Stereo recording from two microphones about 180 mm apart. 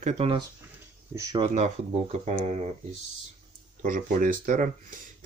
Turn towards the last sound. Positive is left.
turn(degrees=-45)  # may be behind; listen again after turning